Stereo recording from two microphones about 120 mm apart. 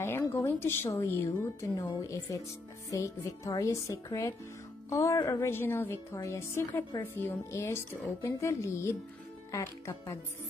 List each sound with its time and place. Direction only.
0.0 s a sound: 20° left (ahead or behind)
0.5 s a woman's voice: 20° left (ahead or behind)
5.5 s a woman's voice: 20° left (ahead or behind)